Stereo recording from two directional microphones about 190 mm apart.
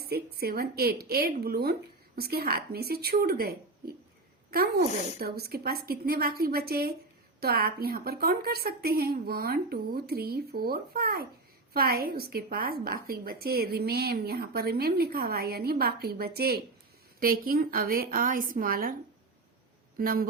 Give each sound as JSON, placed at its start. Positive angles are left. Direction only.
{"t": 0.1, "sound": "a woman's voice", "side_deg": -55}
{"t": 20.0, "sound": "a woman's voice", "side_deg": -50}